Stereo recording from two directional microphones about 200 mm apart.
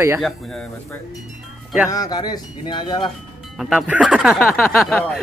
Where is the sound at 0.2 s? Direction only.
5° left (ahead or behind).